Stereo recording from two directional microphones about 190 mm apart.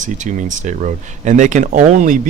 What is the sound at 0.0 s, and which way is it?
Speech, 40° right (ahead or behind).